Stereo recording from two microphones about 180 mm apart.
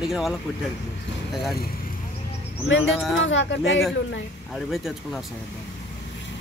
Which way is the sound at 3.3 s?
90° left.